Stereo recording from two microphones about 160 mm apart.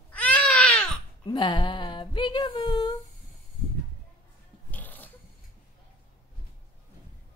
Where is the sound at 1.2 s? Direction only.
30° left (ahead or behind).